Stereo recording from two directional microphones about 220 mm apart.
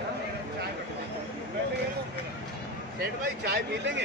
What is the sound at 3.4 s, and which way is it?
Speech, 50° right (ahead or behind).